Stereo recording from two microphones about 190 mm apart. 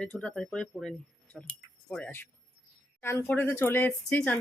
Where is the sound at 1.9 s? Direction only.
10° left (ahead or behind).